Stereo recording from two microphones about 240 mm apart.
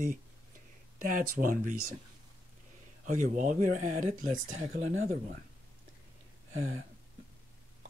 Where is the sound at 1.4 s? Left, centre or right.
Right.